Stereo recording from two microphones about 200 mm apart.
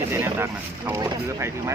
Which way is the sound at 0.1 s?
15° right (ahead or behind).